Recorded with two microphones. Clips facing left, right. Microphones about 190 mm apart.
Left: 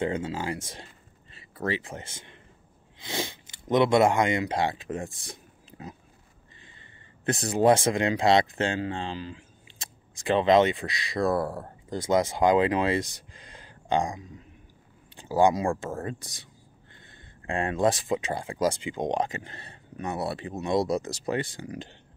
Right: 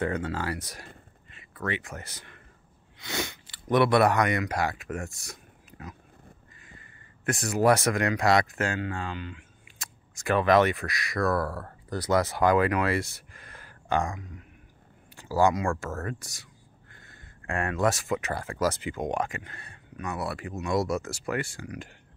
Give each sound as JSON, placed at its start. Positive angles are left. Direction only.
{"t": 0.0, "sound": "speech", "side_deg": 20}
{"t": 7.2, "sound": "speech", "side_deg": 30}
{"t": 15.9, "sound": "speech", "side_deg": 30}
{"t": 17.0, "sound": "a sound", "side_deg": 20}
{"t": 17.9, "sound": "speech", "side_deg": 15}